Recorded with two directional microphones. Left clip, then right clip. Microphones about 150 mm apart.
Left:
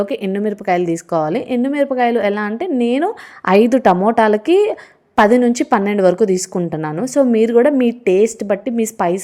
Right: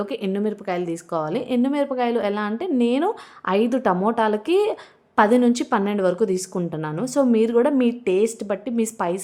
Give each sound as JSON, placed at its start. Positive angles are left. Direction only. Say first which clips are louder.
{"t": 0.0, "sound": "a woman's voice", "louder": "left 6 dB", "side_deg": 25}
{"t": 3.4, "sound": "a woman's voice", "louder": "left 9 dB", "side_deg": 30}